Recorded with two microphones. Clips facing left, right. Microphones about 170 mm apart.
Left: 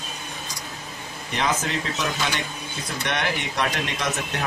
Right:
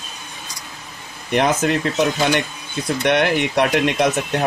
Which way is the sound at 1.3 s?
60° right (ahead or behind).